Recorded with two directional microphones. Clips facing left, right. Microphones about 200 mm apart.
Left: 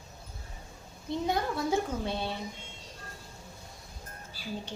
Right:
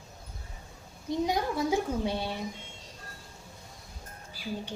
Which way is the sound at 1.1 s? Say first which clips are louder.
Right 2 dB; 15° right (ahead or behind).